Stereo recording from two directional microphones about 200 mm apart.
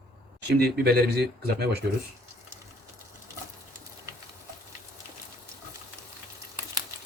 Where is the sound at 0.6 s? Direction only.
50° right (ahead or behind).